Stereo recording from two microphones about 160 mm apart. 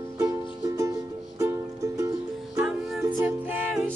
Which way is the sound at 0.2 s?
20° right (ahead or behind).